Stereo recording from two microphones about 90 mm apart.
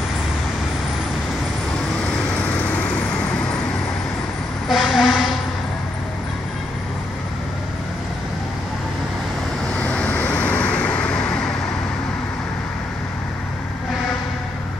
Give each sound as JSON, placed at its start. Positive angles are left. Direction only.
{"t": 4.6, "sound": "vehicle", "side_deg": 0}
{"t": 9.8, "sound": "vehicle", "side_deg": 15}